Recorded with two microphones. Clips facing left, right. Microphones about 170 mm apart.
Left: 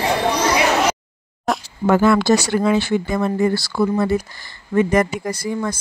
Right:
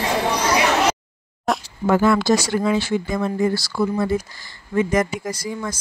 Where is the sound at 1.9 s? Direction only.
70° left (ahead or behind).